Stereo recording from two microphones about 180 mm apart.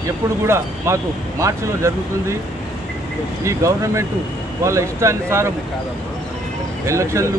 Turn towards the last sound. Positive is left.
turn(degrees=-15)  # may be behind; listen again after turning